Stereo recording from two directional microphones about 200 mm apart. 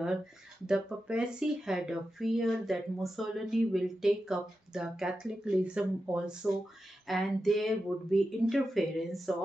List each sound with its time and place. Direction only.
0.0 s speech: 5° right (ahead or behind)